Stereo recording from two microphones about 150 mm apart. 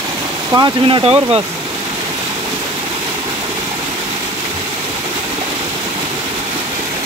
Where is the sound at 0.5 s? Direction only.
30° right (ahead or behind).